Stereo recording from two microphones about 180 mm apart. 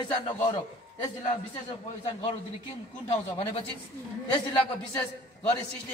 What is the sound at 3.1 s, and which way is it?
Speech, 35° left (ahead or behind).